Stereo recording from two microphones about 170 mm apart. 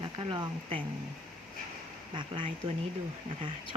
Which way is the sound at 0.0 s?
30° right (ahead or behind).